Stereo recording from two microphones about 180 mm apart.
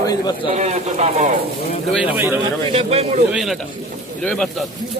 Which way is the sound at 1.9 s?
10° right (ahead or behind).